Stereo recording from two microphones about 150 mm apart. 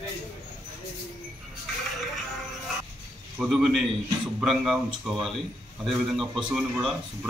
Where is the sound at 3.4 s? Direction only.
Centre (ahead or behind).